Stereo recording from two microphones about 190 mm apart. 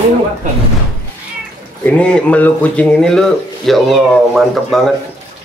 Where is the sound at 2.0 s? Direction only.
5° left (ahead or behind).